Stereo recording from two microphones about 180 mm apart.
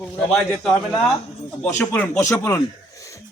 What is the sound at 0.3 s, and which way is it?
A man's voice, 5° left (ahead or behind).